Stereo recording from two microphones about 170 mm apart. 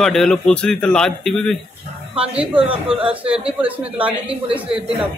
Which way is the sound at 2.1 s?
35° right (ahead or behind).